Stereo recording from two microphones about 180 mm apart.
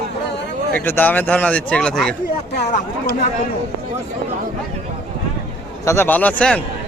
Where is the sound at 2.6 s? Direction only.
45° left (ahead or behind).